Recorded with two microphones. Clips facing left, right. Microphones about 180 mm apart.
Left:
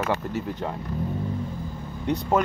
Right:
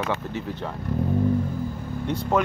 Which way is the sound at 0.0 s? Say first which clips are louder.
Left 1 dB; 5° left (ahead or behind).